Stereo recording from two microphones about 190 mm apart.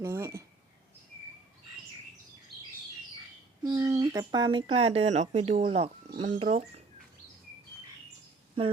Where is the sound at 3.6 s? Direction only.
20° right (ahead or behind); by 6.6 s 35° right (ahead or behind).